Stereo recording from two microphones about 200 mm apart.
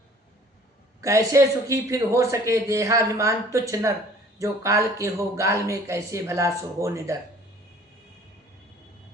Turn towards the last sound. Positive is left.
turn(degrees=-15)  # may be behind; listen again after turning